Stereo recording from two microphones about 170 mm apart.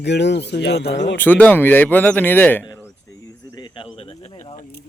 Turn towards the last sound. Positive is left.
turn(degrees=35)  # may be behind; listen again after turning